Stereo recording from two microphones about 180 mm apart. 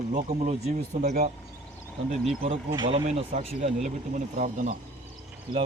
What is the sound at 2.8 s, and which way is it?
Speech, 35° right (ahead or behind).